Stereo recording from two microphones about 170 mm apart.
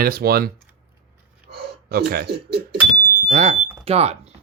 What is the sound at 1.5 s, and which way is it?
Speech, 65° right (ahead or behind).